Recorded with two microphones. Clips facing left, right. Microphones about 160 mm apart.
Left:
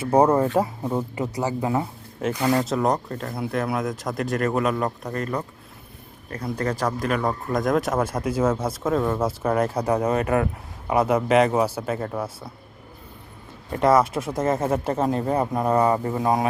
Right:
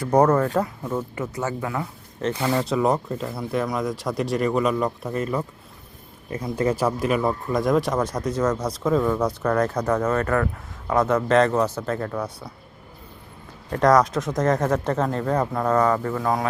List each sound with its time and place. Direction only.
0.0 s speech: 10° left (ahead or behind)
2.5 s speech: centre (ahead or behind)
13.7 s speech: 5° left (ahead or behind); by 16.5 s 20° left (ahead or behind)